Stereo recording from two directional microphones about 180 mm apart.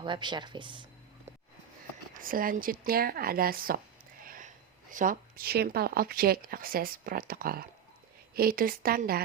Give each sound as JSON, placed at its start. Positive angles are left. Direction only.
{"t": 0.0, "sound": "speech", "side_deg": -25}
{"t": 2.1, "sound": "a woman's voice", "side_deg": -50}